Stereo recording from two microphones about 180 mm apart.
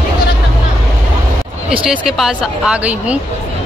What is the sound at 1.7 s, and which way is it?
Speech, 5° right (ahead or behind).